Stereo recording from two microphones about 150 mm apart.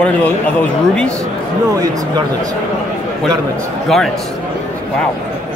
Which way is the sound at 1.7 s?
25° right (ahead or behind).